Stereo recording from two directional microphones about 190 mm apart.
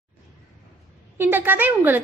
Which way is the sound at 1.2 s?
10° right (ahead or behind).